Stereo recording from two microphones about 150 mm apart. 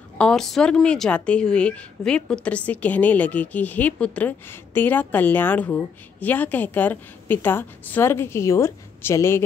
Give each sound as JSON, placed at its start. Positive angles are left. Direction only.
{"t": 0.2, "sound": "a woman's voice", "side_deg": 5}